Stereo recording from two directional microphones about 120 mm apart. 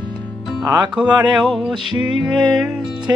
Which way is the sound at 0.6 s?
35° right (ahead or behind).